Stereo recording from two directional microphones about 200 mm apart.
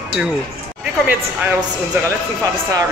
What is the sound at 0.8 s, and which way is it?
Speech, 10° right (ahead or behind).